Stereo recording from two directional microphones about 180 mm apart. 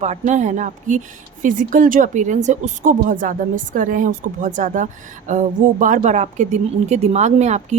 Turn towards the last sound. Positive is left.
turn(degrees=-40)  # may be behind; listen again after turning